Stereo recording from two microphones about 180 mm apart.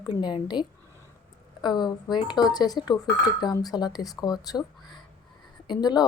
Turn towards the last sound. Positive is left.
turn(degrees=20)  # may be behind; listen again after turning